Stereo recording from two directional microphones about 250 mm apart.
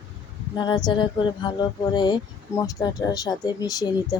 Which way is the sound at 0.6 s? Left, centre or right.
Centre.